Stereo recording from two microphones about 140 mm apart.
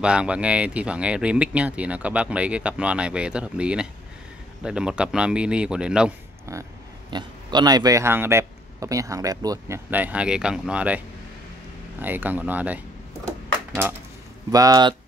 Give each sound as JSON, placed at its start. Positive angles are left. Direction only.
{"t": 0.0, "sound": "speech", "side_deg": -5}
{"t": 6.5, "sound": "speech", "side_deg": -20}
{"t": 7.1, "sound": "speech", "side_deg": -30}
{"t": 9.8, "sound": "speech", "side_deg": -10}
{"t": 12.0, "sound": "speech", "side_deg": -15}
{"t": 14.5, "sound": "speech", "side_deg": -25}